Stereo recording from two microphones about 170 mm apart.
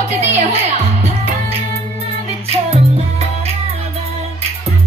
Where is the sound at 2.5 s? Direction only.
40° right (ahead or behind).